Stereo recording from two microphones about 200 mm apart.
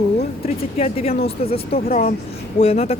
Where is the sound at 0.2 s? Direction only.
30° left (ahead or behind).